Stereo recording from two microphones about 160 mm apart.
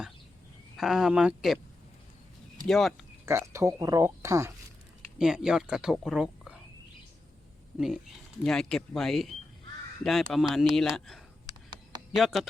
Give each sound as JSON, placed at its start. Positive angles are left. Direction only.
{"t": 0.8, "sound": "speech", "side_deg": 0}
{"t": 2.6, "sound": "speech", "side_deg": 0}
{"t": 3.2, "sound": "speech", "side_deg": -15}
{"t": 5.1, "sound": "speech", "side_deg": -5}
{"t": 7.8, "sound": "speech", "side_deg": 0}